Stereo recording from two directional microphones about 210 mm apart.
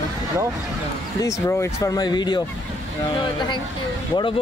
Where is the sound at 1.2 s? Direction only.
15° left (ahead or behind).